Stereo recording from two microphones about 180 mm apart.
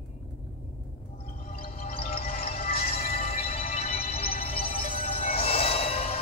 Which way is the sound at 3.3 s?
35° left (ahead or behind).